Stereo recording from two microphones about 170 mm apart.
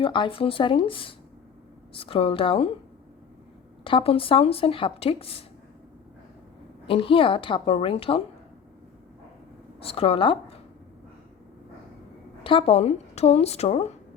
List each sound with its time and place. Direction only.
0.0 s speech: 30° left (ahead or behind)
3.8 s speech: 30° left (ahead or behind)
6.8 s speech: 30° left (ahead or behind)
9.8 s speech: 35° left (ahead or behind)
12.4 s speech: 30° left (ahead or behind)